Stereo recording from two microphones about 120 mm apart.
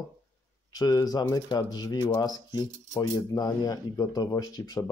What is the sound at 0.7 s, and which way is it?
Speech, 30° left (ahead or behind).